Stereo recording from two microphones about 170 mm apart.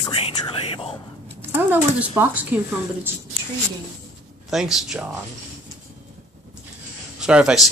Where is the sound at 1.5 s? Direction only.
10° right (ahead or behind).